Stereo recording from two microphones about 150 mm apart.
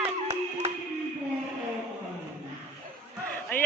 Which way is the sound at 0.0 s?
45° right (ahead or behind).